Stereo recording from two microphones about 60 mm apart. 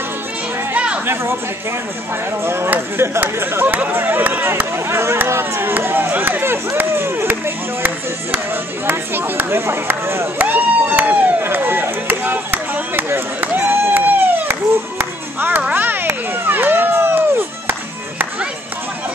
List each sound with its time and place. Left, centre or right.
2.4 s speech: right
4.5 s speech: right
10.4 s speech: right
11.4 s chop: right
15.0 s music: right
15.7 s a sound: right